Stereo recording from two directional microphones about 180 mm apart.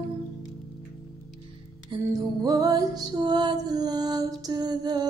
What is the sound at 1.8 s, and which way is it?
Music, 20° right (ahead or behind).